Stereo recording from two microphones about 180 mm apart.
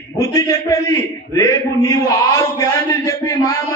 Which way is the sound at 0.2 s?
20° left (ahead or behind).